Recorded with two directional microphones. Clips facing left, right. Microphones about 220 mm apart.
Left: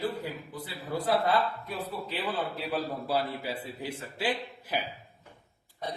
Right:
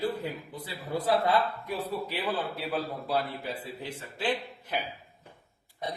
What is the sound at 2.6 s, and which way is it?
A man's voice, centre (ahead or behind).